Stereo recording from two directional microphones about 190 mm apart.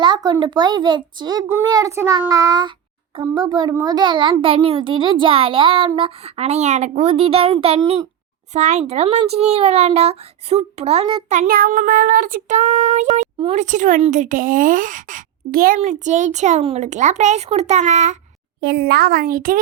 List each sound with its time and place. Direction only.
0.0 s a child's voice: 25° right (ahead or behind); by 18.2 s 40° right (ahead or behind)
18.6 s a child's voice: 55° right (ahead or behind)